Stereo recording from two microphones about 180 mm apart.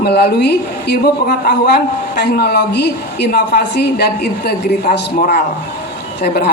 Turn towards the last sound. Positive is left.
turn(degrees=65)  # may be behind; listen again after turning